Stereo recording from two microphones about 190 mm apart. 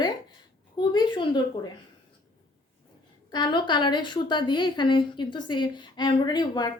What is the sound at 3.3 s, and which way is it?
A woman's voice, 25° left (ahead or behind).